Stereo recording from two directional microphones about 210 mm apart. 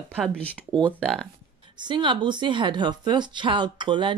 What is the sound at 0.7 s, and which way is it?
Speech, 20° right (ahead or behind).